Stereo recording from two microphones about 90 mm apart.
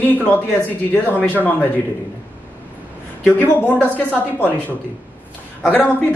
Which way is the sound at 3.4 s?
20° left (ahead or behind).